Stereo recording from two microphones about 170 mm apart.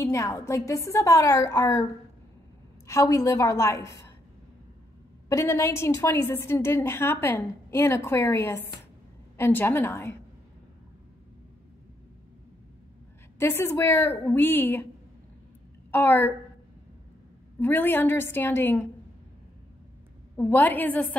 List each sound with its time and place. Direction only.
0.0 s a woman's voice: 20° left (ahead or behind)
2.9 s a woman's voice: 20° left (ahead or behind)
5.3 s a woman's voice: 15° left (ahead or behind)
13.4 s a woman's voice: 15° left (ahead or behind)
15.9 s a woman's voice: 10° left (ahead or behind)
17.6 s a woman's voice: 10° left (ahead or behind)
20.3 s a woman's voice: 10° left (ahead or behind)